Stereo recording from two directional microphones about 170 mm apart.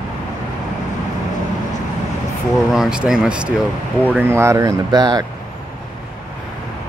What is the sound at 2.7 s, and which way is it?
Speech, 5° right (ahead or behind).